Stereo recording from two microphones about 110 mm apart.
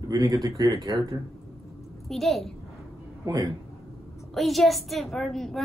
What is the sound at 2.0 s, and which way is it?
Speech, centre (ahead or behind).